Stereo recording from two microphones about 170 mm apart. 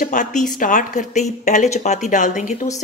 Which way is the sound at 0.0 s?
45° left (ahead or behind).